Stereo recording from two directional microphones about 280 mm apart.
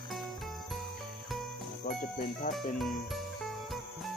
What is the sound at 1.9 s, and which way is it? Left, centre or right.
Speech, left.